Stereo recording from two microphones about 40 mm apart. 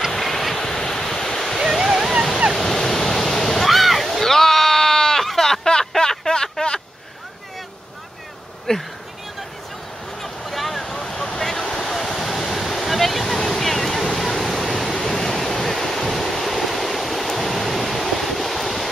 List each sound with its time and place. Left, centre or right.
0.1 s waves: centre
1.6 s waterfall: centre
2.5 s waves: centre
4.2 s a sound: centre
8.7 s speech: centre
10.2 s a sound: centre
11.4 s waves: centre